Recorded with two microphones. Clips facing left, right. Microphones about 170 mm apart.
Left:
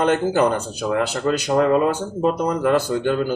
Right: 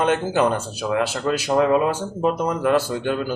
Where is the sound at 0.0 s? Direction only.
5° right (ahead or behind).